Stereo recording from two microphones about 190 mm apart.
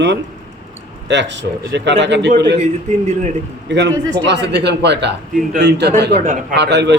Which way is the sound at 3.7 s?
65° right (ahead or behind).